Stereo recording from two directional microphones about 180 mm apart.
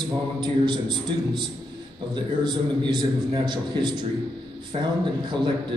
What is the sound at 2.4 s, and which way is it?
A man's voice, 25° right (ahead or behind).